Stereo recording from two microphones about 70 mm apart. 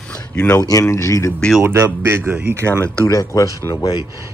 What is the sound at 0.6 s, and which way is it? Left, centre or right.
Speech, left.